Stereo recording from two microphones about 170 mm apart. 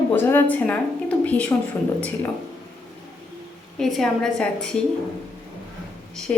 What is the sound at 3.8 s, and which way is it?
A woman's voice, centre (ahead or behind).